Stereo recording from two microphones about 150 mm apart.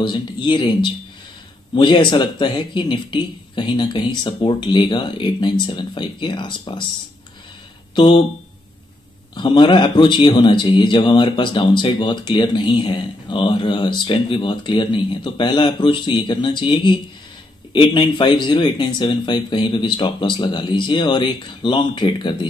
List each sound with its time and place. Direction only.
0.0 s speech: 30° left (ahead or behind)
7.9 s speech: 35° left (ahead or behind)
9.3 s speech: 30° left (ahead or behind)